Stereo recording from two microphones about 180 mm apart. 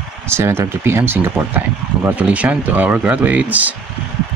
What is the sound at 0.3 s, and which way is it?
Speech, 15° right (ahead or behind).